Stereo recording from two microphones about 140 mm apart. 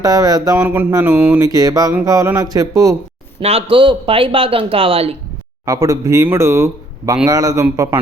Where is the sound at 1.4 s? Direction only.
25° right (ahead or behind).